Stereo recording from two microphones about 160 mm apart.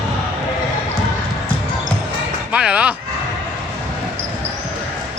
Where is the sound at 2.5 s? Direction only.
5° right (ahead or behind).